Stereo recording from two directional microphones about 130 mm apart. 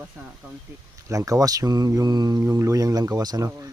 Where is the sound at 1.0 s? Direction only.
25° right (ahead or behind).